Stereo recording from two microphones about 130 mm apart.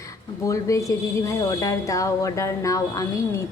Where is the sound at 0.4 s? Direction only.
25° left (ahead or behind).